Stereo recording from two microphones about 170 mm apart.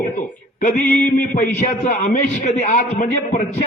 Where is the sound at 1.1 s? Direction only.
55° left (ahead or behind).